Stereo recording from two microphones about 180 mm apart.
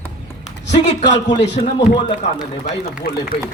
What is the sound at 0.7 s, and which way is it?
Speech, 75° left (ahead or behind).